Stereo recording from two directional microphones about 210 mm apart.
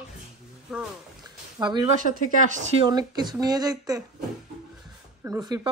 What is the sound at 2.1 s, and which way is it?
Speech, 45° left (ahead or behind).